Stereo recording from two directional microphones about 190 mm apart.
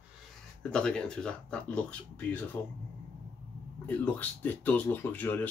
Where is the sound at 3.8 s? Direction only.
10° left (ahead or behind).